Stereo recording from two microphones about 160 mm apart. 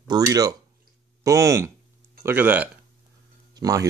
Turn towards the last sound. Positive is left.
turn(degrees=-20)  # may be behind; listen again after turning